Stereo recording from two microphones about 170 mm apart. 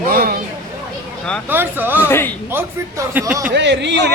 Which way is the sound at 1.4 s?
10° right (ahead or behind).